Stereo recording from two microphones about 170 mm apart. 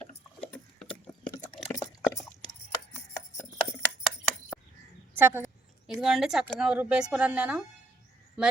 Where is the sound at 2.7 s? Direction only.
15° left (ahead or behind).